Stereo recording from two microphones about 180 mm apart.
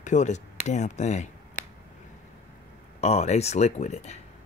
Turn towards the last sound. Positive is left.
turn(degrees=40)  # may be behind; listen again after turning